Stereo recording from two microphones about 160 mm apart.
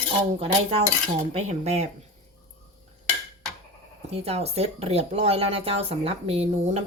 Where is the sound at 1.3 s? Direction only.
45° right (ahead or behind).